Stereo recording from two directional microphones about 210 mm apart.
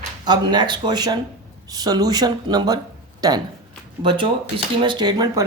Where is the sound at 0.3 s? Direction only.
20° right (ahead or behind).